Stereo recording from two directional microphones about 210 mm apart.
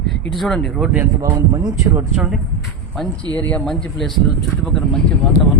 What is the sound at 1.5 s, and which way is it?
Speech, 15° right (ahead or behind).